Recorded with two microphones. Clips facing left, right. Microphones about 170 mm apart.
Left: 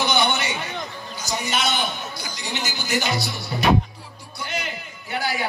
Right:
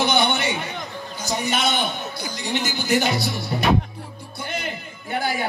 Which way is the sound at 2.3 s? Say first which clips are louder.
Right 6 dB; 55° right (ahead or behind).